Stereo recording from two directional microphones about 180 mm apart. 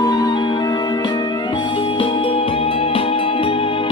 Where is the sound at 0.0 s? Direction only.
20° left (ahead or behind).